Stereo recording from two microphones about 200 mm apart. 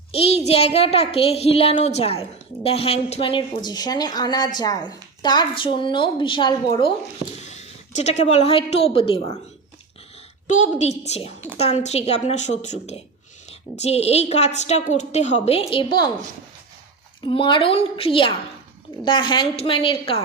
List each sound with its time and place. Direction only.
0.1 s a woman's voice: 30° left (ahead or behind)
7.4 s a sound: 35° left (ahead or behind)
8.2 s a woman's voice: 35° left (ahead or behind)
10.4 s a woman's voice: 35° left (ahead or behind); by 16.1 s 20° left (ahead or behind)
17.2 s a woman's voice: 25° left (ahead or behind)